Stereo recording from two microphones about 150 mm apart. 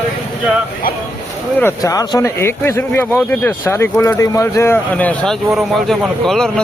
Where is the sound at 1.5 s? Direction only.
20° left (ahead or behind).